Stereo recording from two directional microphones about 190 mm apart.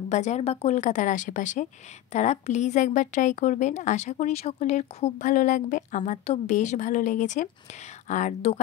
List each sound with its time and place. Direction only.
0.1 s a woman's voice: 35° left (ahead or behind)